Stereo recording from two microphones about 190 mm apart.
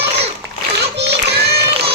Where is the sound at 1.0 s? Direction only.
60° right (ahead or behind).